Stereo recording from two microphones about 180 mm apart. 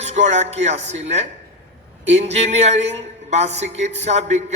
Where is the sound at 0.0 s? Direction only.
40° right (ahead or behind).